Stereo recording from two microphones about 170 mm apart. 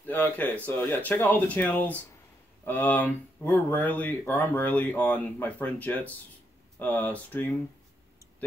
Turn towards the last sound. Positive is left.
turn(degrees=10)  # may be behind; listen again after turning